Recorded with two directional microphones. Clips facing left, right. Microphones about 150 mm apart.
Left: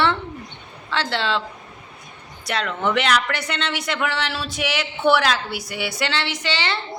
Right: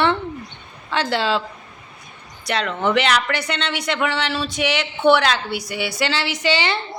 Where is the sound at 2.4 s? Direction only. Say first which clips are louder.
Right 2 dB; centre (ahead or behind).